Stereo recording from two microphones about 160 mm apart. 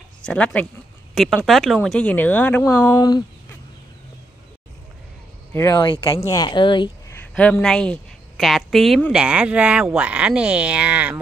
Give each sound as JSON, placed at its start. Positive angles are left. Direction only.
{"t": 0.2, "sound": "a woman's voice", "side_deg": 5}
{"t": 2.6, "sound": "speech", "side_deg": 25}
{"t": 5.5, "sound": "speech", "side_deg": 20}
{"t": 7.3, "sound": "a woman's voice", "side_deg": 10}